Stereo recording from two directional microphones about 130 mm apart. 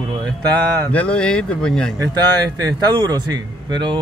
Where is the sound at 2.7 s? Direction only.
30° right (ahead or behind).